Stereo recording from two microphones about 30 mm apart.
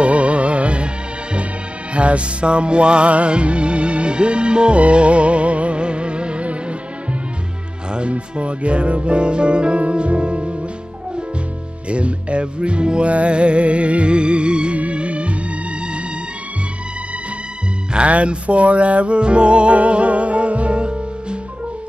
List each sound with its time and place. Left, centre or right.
0.0 s music: right
2.0 s music: right
8.1 s music: right
11.9 s music: right
14.8 s music: right
17.9 s music: right